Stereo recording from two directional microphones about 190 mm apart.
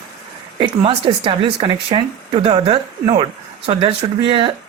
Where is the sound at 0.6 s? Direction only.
30° right (ahead or behind).